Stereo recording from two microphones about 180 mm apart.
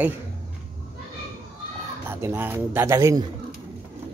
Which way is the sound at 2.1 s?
15° right (ahead or behind).